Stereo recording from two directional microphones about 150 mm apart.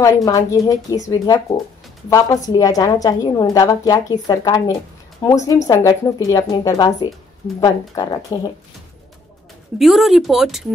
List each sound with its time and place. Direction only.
0.0 s a woman's voice: 20° left (ahead or behind)
9.8 s speech: centre (ahead or behind)